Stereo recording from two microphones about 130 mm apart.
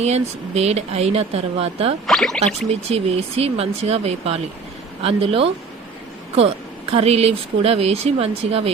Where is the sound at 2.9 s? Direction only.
50° right (ahead or behind).